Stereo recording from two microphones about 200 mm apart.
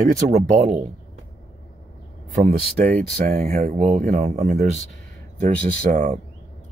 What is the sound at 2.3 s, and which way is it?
Speech, 40° right (ahead or behind).